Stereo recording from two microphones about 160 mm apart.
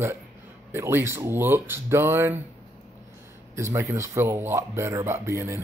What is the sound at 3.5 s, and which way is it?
Speech, 15° right (ahead or behind).